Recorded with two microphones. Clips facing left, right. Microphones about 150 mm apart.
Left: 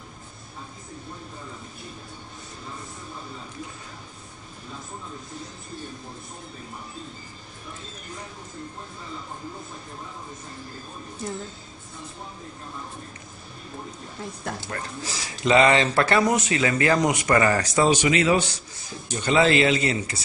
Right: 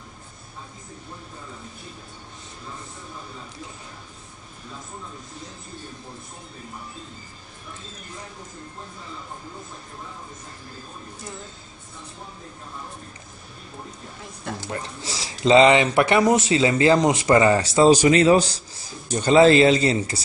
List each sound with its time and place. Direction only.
14.7 s speech: 25° right (ahead or behind)